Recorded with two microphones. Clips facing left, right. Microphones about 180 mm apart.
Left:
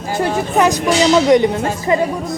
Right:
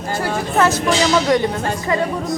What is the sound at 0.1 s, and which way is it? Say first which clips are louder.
A woman's voice: left 4 dB; 20° left (ahead or behind).